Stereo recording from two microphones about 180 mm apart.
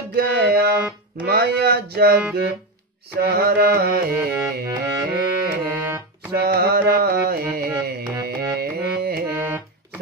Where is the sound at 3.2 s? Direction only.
65° right (ahead or behind).